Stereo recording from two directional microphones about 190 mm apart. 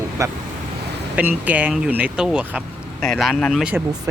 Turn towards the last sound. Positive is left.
turn(degrees=0)  # may be behind; listen again after turning